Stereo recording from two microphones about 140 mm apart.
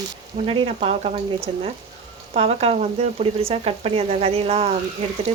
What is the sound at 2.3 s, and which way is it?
Speech, 45° right (ahead or behind).